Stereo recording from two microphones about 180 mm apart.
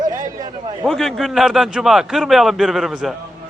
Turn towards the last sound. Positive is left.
turn(degrees=0)  # may be behind; listen again after turning